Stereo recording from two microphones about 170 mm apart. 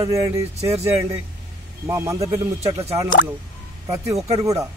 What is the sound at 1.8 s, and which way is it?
Speech, 15° right (ahead or behind).